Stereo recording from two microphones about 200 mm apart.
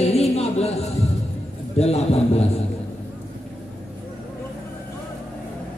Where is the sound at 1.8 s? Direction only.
30° left (ahead or behind).